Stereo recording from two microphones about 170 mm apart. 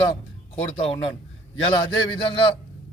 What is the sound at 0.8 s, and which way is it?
A man's voice, 35° left (ahead or behind).